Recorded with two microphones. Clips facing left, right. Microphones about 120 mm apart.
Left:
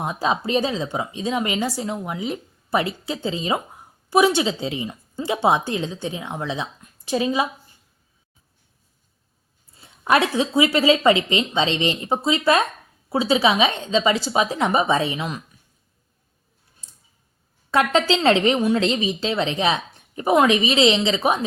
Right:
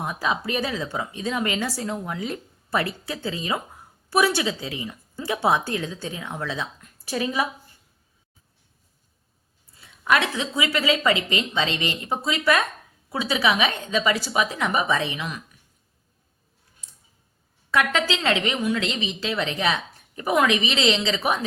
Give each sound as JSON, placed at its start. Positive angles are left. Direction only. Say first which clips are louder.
{"t": 0.0, "sound": "speech", "louder": "left 3 dB", "side_deg": 25}
{"t": 9.7, "sound": "speech", "louder": "left 3 dB", "side_deg": 30}
{"t": 17.7, "sound": "speech", "louder": "left 4 dB", "side_deg": 30}